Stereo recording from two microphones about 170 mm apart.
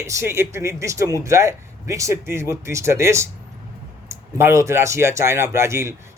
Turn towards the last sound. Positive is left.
turn(degrees=-15)  # may be behind; listen again after turning